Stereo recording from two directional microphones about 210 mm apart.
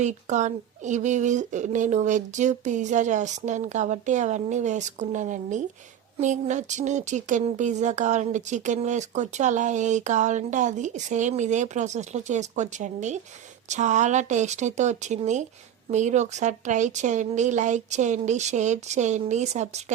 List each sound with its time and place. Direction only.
0.0 s speech: 35° right (ahead or behind)